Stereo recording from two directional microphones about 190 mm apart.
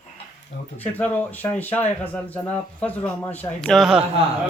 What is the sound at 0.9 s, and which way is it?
A man's voice, 10° left (ahead or behind).